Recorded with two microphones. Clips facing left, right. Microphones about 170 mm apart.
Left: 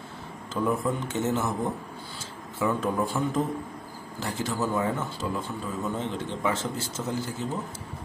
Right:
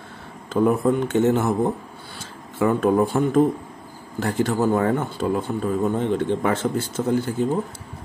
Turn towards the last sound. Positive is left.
turn(degrees=-60)  # may be behind; listen again after turning